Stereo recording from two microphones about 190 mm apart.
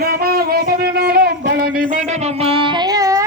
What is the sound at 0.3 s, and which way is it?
Music, 50° right (ahead or behind).